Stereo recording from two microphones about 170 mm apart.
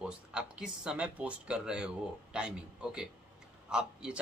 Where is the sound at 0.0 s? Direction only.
5° right (ahead or behind).